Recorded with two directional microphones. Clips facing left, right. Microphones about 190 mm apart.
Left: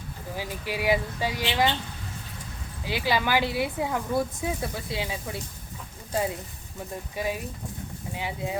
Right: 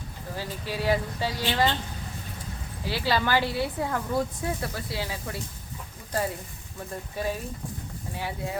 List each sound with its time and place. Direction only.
0.3 s speech: 15° left (ahead or behind)
2.8 s speech: 15° left (ahead or behind)
7.2 s speech: 10° left (ahead or behind)